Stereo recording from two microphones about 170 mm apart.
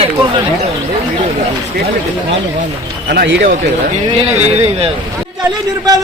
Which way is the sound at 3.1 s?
65° right (ahead or behind).